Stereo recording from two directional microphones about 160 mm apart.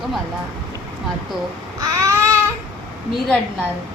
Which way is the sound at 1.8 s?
20° right (ahead or behind).